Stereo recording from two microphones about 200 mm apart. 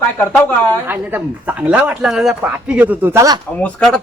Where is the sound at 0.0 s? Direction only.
10° left (ahead or behind).